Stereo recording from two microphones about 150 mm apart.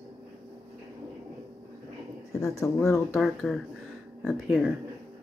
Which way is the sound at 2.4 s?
20° left (ahead or behind).